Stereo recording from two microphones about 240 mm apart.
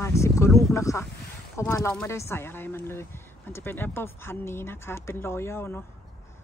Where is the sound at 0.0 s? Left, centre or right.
Centre.